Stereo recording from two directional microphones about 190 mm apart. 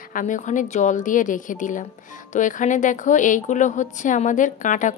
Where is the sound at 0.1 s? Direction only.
45° left (ahead or behind).